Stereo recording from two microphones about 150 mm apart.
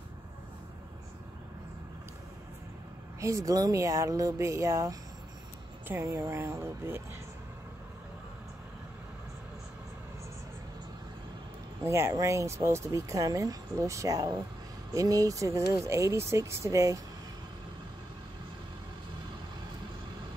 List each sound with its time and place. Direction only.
3.2 s speech: 20° right (ahead or behind)
11.8 s speech: 20° right (ahead or behind)